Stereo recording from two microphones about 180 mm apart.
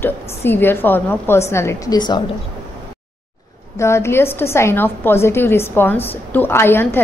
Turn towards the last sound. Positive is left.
turn(degrees=10)  # may be behind; listen again after turning